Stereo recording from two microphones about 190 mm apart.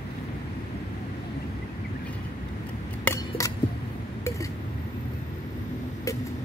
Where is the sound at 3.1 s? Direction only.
15° left (ahead or behind).